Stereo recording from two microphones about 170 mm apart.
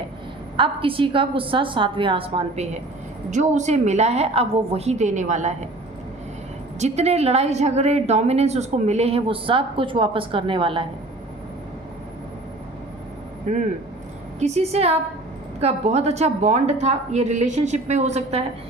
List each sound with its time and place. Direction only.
0.5 s a woman's voice: 30° right (ahead or behind)
3.2 s a woman's voice: 45° right (ahead or behind)
6.7 s a woman's voice: 40° right (ahead or behind)
13.5 s a woman's voice: 40° right (ahead or behind)